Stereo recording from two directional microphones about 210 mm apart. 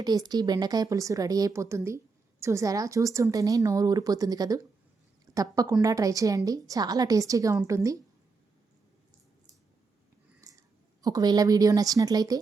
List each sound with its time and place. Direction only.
0.0 s a woman's voice: 20° right (ahead or behind)
10.5 s a sound: 15° right (ahead or behind)
11.0 s a woman's voice: 20° right (ahead or behind)